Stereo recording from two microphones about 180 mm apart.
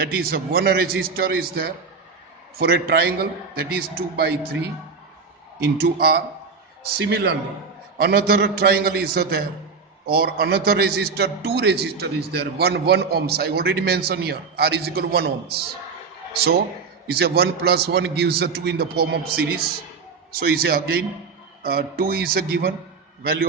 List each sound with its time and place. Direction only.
0.1 s a man's voice: 55° right (ahead or behind)
5.5 s a man's voice: 60° right (ahead or behind)
17.1 s a man's voice: 60° right (ahead or behind)